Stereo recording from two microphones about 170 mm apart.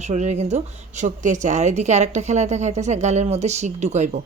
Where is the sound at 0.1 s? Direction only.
40° right (ahead or behind).